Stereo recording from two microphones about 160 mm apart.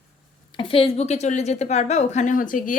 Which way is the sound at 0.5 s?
35° left (ahead or behind).